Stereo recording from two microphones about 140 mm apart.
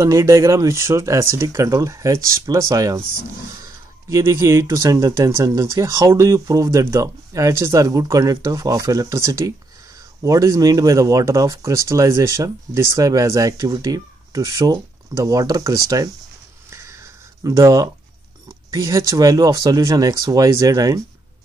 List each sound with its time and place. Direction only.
0.0 s speech: 20° right (ahead or behind)
17.4 s speech: 25° right (ahead or behind)